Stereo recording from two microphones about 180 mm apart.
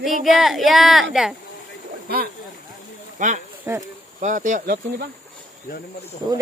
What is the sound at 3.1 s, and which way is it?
Speech, 45° right (ahead or behind).